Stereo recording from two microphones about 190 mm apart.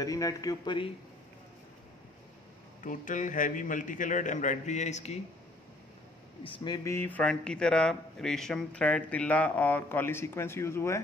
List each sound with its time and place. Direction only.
0.0 s speech: 20° left (ahead or behind)
2.8 s a man's voice: 45° left (ahead or behind)
6.4 s a man's voice: 25° left (ahead or behind)